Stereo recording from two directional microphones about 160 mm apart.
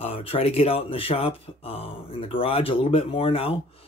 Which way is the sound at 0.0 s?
40° left (ahead or behind).